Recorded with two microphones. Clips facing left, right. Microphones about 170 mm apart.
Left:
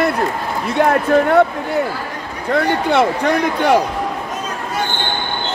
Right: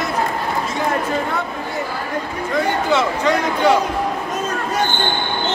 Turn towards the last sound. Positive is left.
turn(degrees=60)  # may be behind; listen again after turning